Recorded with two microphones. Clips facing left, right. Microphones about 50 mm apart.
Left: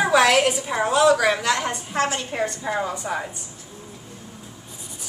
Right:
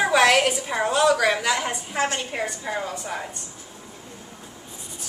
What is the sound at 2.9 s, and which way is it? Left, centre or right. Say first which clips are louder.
Speech: left 3 dB; centre.